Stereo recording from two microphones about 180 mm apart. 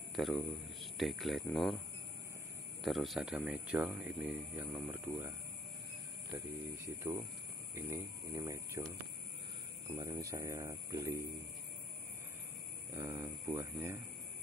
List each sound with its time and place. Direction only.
0.1 s speech: centre (ahead or behind)
2.8 s speech: centre (ahead or behind)
7.0 s speech: 15° right (ahead or behind)
9.9 s speech: 20° right (ahead or behind)
12.9 s speech: 20° right (ahead or behind)